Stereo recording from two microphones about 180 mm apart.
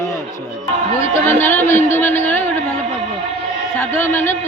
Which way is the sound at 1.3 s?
10° left (ahead or behind).